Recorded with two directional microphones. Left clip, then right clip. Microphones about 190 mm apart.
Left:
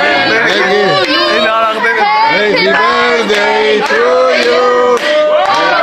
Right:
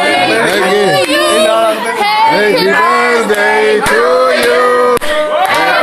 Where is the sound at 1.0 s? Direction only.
55° right (ahead or behind).